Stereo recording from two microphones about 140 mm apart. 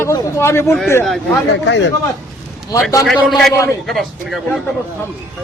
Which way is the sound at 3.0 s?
Centre (ahead or behind).